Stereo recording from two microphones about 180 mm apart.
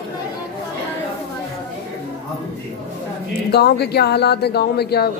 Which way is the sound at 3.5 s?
65° left (ahead or behind).